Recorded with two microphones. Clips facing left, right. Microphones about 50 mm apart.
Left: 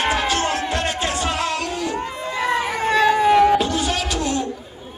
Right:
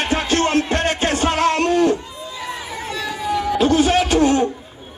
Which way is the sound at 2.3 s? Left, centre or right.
Left.